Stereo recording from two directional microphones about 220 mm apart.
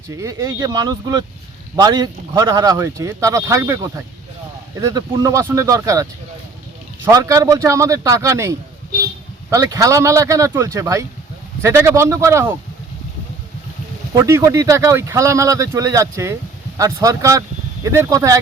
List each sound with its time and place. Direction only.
0.1 s speech: 15° right (ahead or behind)
14.1 s speech: 15° right (ahead or behind)